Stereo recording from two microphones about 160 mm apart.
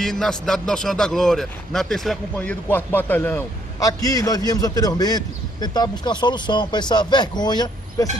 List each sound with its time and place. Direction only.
0.0 s a man's voice: centre (ahead or behind); by 8.1 s 25° left (ahead or behind)